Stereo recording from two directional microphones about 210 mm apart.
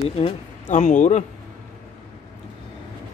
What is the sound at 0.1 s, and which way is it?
Speech, 30° left (ahead or behind).